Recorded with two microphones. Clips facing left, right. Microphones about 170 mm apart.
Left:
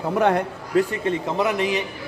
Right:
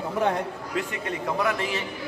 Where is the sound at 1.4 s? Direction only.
20° left (ahead or behind).